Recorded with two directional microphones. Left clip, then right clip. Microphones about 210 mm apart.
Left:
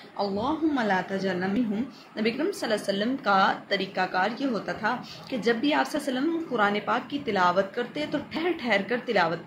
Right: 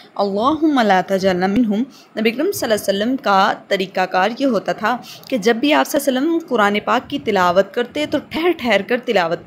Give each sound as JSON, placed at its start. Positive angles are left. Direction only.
{"t": 0.2, "sound": "a woman's voice", "side_deg": -50}